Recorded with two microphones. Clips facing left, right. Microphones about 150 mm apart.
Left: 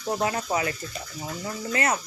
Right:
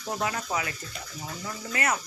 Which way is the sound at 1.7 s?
30° left (ahead or behind).